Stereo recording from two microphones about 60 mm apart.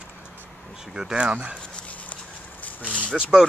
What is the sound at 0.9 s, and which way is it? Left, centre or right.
Speech, centre.